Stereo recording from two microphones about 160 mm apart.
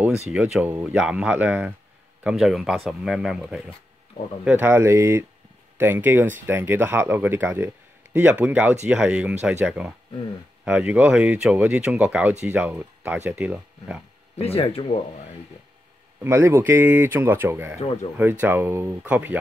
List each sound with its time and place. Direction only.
0.3 s speech: 5° right (ahead or behind)
14.3 s speech: 40° left (ahead or behind)
16.2 s speech: 15° right (ahead or behind)